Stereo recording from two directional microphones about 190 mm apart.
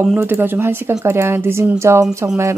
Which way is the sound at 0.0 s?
10° right (ahead or behind).